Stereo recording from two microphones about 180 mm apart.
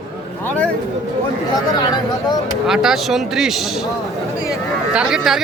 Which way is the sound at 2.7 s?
5° right (ahead or behind).